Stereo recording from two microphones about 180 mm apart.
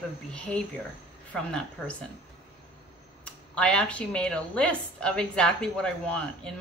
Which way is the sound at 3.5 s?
5° left (ahead or behind).